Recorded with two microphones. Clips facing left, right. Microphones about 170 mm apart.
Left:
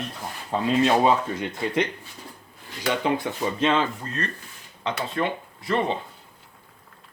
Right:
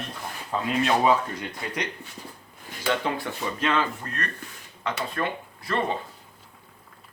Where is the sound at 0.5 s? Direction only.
30° left (ahead or behind).